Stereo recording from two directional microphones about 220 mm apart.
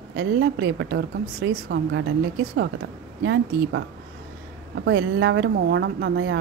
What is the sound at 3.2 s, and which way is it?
Speech, 55° right (ahead or behind).